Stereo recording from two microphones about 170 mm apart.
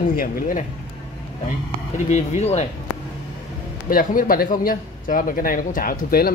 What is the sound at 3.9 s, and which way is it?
Speech, 55° left (ahead or behind).